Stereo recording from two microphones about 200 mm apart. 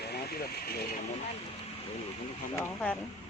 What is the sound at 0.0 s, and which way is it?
Vehicle, 50° left (ahead or behind).